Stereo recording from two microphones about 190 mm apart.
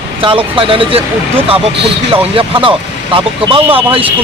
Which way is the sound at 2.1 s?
25° right (ahead or behind).